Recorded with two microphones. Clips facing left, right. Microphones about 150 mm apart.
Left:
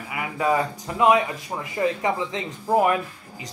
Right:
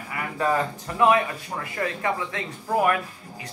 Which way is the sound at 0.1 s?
10° left (ahead or behind).